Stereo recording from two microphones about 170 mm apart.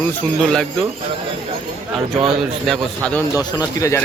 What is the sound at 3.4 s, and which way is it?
Speech, 20° left (ahead or behind).